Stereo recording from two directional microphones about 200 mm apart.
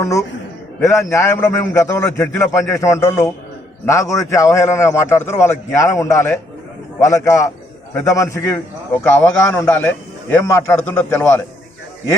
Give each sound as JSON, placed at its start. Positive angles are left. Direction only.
{"t": 0.0, "sound": "a man's voice", "side_deg": 15}